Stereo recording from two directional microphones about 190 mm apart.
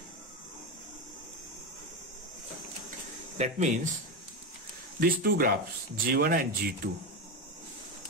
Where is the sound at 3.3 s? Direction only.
35° right (ahead or behind).